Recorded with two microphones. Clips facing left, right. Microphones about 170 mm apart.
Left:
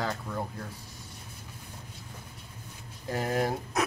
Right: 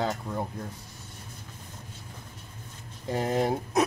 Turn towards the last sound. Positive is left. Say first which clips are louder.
# right 3 dB
turn(degrees=-20)  # may be behind; listen again after turning